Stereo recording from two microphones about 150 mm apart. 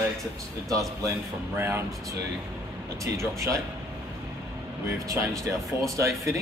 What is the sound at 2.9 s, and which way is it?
Speech, 20° right (ahead or behind).